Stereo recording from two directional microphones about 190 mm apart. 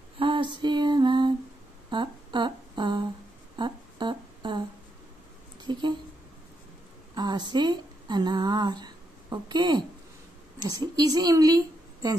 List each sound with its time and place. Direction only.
0.2 s female singing: 25° right (ahead or behind)
1.9 s a sound: 25° right (ahead or behind)
3.5 s humming: 25° right (ahead or behind)
5.7 s speech: 25° right (ahead or behind)
7.2 s speech: 25° right (ahead or behind)